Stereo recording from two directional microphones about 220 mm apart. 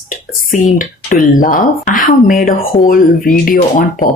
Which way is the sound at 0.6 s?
40° left (ahead or behind).